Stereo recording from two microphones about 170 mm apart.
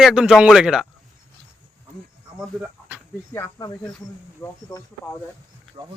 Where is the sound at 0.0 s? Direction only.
5° right (ahead or behind).